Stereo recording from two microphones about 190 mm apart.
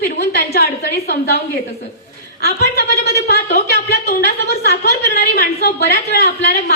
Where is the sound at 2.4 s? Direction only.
55° left (ahead or behind).